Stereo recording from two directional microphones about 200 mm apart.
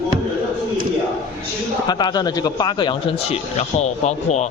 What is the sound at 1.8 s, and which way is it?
A man's voice, 20° left (ahead or behind).